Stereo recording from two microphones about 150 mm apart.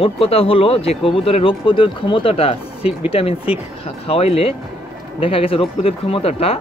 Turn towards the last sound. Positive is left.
turn(degrees=40)  # may be behind; listen again after turning